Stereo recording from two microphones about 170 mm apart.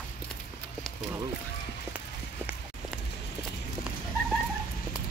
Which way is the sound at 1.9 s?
5° right (ahead or behind).